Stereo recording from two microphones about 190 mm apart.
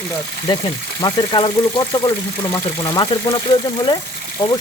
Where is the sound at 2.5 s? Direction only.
20° left (ahead or behind).